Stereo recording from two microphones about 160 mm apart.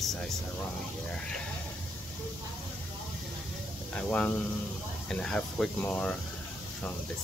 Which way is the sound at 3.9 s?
10° left (ahead or behind).